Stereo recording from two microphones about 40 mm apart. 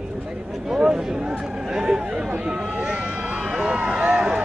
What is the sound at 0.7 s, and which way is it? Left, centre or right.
Speech, centre.